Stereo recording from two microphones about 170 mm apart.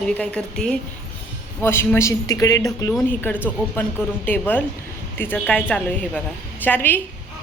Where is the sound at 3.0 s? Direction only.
10° left (ahead or behind).